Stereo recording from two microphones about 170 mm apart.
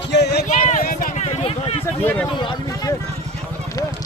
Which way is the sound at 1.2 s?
35° left (ahead or behind).